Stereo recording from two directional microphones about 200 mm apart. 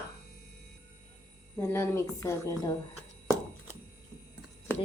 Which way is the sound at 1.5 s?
10° left (ahead or behind).